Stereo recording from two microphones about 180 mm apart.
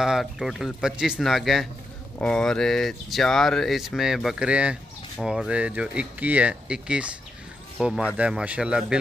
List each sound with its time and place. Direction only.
0.0 s speech: 5° right (ahead or behind)